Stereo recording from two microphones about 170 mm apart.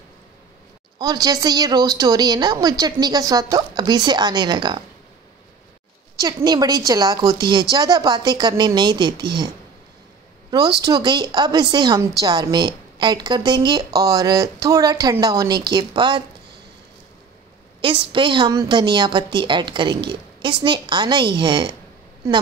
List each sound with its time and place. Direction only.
0.9 s a woman's voice: 25° right (ahead or behind)
6.1 s a woman's voice: 25° right (ahead or behind)
10.8 s a woman's voice: 25° right (ahead or behind)
17.7 s a woman's voice: 30° right (ahead or behind)